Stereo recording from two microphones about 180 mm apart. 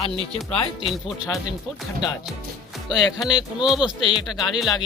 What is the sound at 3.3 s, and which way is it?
Speech, 25° left (ahead or behind).